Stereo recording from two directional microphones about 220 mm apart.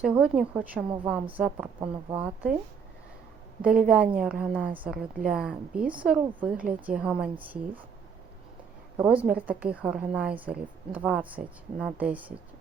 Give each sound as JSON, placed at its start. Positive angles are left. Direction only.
{"t": 0.0, "sound": "a woman's voice", "side_deg": -5}
{"t": 3.6, "sound": "a woman's voice", "side_deg": -5}
{"t": 9.0, "sound": "a woman's voice", "side_deg": -5}